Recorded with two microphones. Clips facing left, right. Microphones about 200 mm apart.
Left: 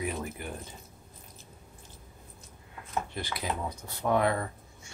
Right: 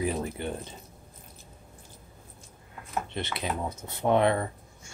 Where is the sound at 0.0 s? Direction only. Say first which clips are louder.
Right 5 dB; 30° right (ahead or behind).